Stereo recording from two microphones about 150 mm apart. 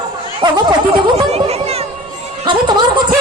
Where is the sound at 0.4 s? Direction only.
35° right (ahead or behind).